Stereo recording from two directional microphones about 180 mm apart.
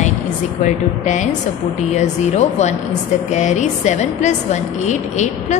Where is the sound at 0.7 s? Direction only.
45° left (ahead or behind).